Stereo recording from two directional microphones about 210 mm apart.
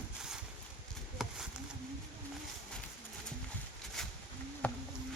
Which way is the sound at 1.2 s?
Centre (ahead or behind).